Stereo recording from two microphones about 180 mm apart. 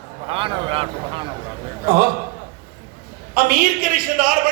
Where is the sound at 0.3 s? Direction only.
30° right (ahead or behind).